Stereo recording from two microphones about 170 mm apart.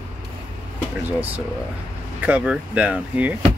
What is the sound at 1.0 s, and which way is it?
Speech, 10° right (ahead or behind).